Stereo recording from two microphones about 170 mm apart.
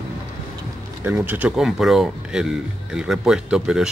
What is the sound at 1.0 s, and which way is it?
Speech, 10° right (ahead or behind).